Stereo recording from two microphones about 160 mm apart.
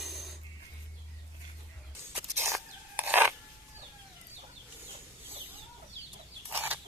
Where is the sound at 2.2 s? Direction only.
15° right (ahead or behind).